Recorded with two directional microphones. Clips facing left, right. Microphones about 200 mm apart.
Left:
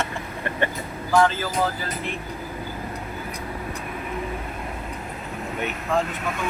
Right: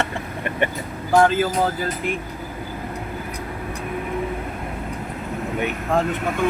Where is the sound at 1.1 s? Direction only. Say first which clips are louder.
Right 3 dB; 50° right (ahead or behind).